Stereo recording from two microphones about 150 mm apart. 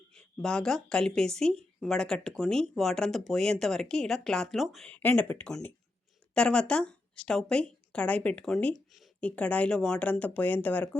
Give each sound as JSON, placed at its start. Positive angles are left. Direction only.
{"t": 0.1, "sound": "a woman's voice", "side_deg": 5}